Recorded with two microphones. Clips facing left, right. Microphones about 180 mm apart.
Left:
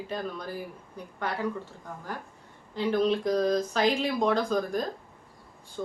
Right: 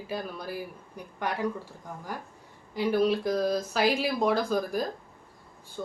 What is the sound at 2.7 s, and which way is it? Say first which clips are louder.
Speech: right 1 dB; 10° right (ahead or behind).